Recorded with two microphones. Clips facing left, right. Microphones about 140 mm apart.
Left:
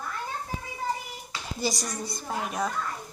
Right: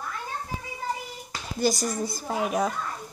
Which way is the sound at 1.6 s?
Centre (ahead or behind).